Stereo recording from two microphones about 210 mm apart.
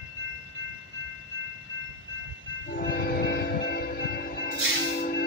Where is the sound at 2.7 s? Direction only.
45° left (ahead or behind).